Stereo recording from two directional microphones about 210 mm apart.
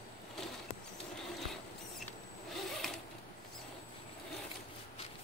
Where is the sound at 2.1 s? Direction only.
Centre (ahead or behind).